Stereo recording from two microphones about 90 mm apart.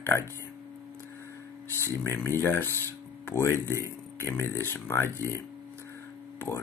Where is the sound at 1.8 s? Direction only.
30° left (ahead or behind).